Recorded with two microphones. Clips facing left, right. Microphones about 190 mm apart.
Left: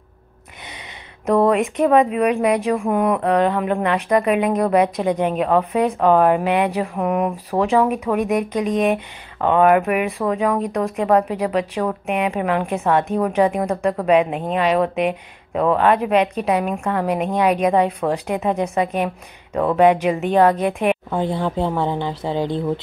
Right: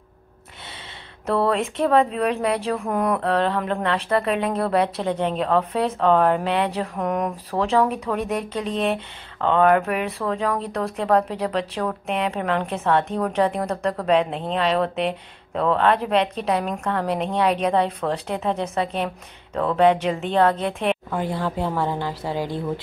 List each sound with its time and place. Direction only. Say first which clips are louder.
1.2 s speech: left 5 dB; 15° left (ahead or behind)
21.1 s a woman's voice: left 4 dB; 25° left (ahead or behind)